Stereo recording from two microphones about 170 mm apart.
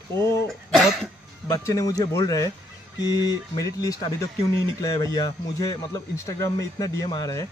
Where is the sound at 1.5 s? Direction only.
20° left (ahead or behind).